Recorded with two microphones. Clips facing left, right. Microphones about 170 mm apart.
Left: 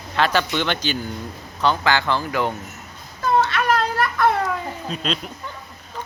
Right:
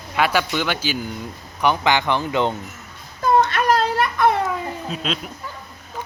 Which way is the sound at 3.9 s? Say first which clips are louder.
Right 1 dB; 20° right (ahead or behind).